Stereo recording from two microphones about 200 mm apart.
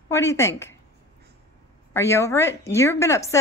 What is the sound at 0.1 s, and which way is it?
Speech, 15° left (ahead or behind).